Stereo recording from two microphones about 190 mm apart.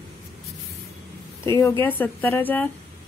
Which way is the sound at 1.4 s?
15° left (ahead or behind).